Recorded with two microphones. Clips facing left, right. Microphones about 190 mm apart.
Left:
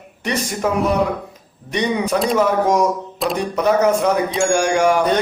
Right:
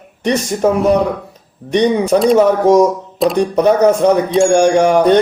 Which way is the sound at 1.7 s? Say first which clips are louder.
Right 7 dB; 35° right (ahead or behind).